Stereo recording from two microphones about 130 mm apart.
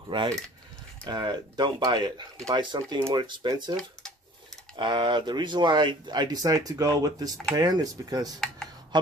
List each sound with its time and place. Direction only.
0.1 s speech: 40° right (ahead or behind)
4.7 s speech: 35° right (ahead or behind)